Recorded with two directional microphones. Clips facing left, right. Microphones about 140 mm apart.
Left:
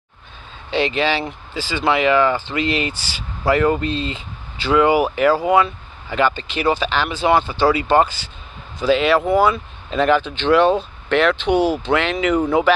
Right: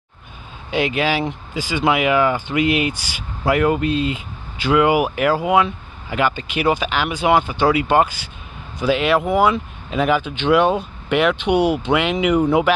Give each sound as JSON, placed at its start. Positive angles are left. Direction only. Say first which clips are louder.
{"t": 0.7, "sound": "speech", "louder": "even", "side_deg": -10}